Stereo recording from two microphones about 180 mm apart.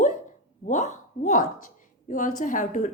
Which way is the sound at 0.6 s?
45° left (ahead or behind).